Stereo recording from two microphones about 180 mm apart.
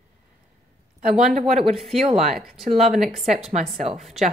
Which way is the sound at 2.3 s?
Centre (ahead or behind).